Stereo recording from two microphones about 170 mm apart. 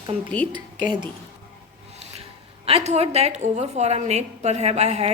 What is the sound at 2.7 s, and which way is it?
Speech, 40° right (ahead or behind).